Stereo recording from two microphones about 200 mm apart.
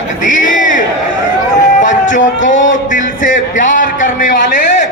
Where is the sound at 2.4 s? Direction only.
40° left (ahead or behind).